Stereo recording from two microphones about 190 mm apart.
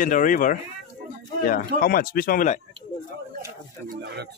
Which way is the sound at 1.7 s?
50° left (ahead or behind).